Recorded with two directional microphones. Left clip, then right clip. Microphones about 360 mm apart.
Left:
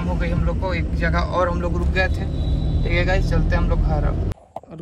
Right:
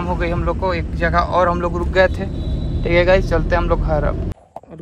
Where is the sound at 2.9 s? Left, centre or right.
Centre.